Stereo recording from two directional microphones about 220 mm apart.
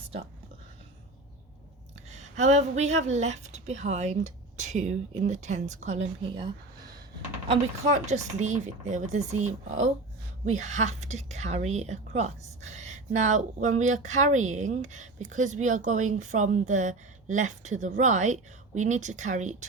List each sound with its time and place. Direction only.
2.0 s a woman's voice: 30° right (ahead or behind)